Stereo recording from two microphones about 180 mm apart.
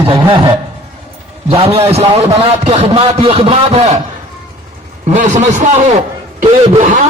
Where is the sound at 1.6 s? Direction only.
35° right (ahead or behind).